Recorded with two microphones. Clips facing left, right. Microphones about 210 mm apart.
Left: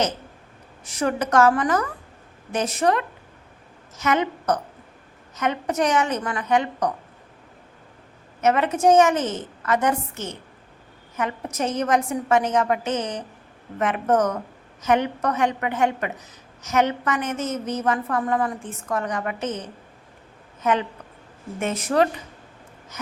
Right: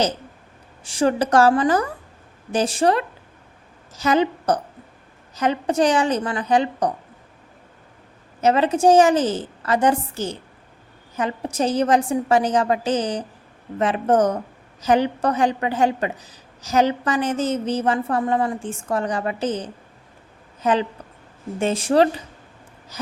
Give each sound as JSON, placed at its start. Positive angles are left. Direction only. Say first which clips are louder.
{"t": 0.9, "sound": "a woman's voice", "louder": "right 4 dB", "side_deg": -30}
{"t": 8.4, "sound": "a woman's voice", "louder": "right 3 dB", "side_deg": -30}